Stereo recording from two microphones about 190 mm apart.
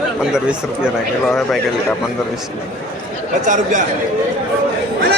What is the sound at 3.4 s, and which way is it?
Speech, 40° right (ahead or behind).